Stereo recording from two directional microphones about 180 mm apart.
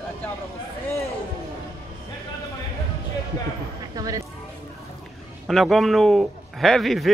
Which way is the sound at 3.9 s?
20° right (ahead or behind).